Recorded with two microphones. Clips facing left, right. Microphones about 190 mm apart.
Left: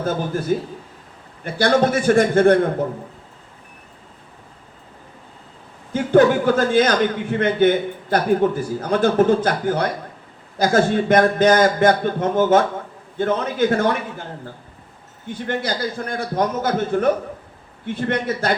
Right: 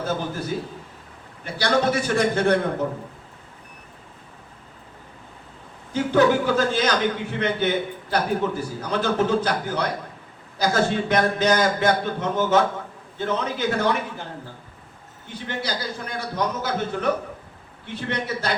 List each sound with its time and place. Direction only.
0.0 s a man's voice: 50° left (ahead or behind)
1.5 s a man's voice: 50° left (ahead or behind)
5.9 s a man's voice: 50° left (ahead or behind)
15.3 s a man's voice: 50° left (ahead or behind)